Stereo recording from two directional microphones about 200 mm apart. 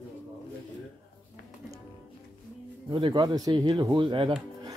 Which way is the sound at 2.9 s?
25° right (ahead or behind).